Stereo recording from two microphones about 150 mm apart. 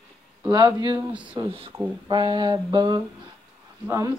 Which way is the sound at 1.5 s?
40° right (ahead or behind).